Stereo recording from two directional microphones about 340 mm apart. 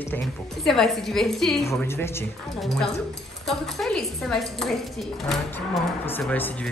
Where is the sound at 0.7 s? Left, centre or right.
Centre.